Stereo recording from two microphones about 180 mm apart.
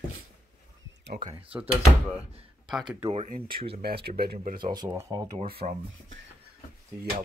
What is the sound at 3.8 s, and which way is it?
Speech, 60° right (ahead or behind).